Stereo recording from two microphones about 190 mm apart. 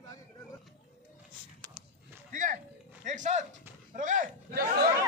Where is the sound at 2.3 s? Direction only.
45° right (ahead or behind).